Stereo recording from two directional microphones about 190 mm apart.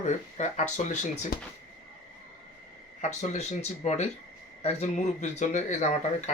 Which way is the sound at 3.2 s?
40° left (ahead or behind).